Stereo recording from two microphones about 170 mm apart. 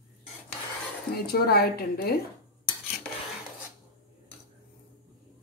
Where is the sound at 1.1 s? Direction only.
65° left (ahead or behind).